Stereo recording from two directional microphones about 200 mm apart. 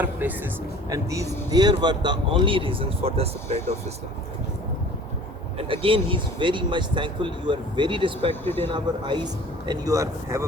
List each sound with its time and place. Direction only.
0.0 s speech: 10° right (ahead or behind); by 3.2 s 30° right (ahead or behind)
5.5 s speech: 25° right (ahead or behind)
8.4 s speech: 10° left (ahead or behind)
8.7 s speech: 20° right (ahead or behind)